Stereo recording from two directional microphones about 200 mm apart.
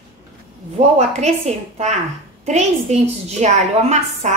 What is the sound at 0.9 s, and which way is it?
Speech, 35° right (ahead or behind).